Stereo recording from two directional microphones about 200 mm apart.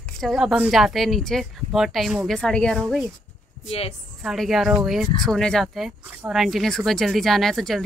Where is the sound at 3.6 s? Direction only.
30° left (ahead or behind).